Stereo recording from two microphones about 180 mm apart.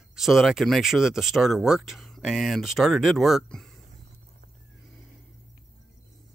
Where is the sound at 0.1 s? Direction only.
Centre (ahead or behind).